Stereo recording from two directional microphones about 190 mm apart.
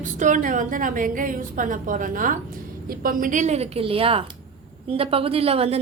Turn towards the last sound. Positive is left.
turn(degrees=-30)  # may be behind; listen again after turning